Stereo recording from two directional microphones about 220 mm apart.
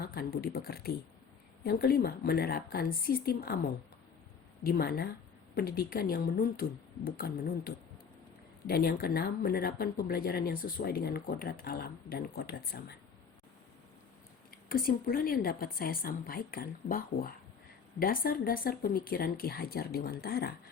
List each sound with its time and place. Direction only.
0.0 s speech: 45° left (ahead or behind)
4.6 s speech: 45° left (ahead or behind)
14.5 s a woman's voice: 40° left (ahead or behind)